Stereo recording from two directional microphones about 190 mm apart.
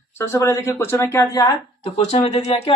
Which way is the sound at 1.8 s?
30° left (ahead or behind).